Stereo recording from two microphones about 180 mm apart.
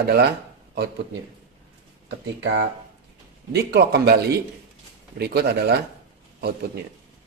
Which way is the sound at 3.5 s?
65° right (ahead or behind).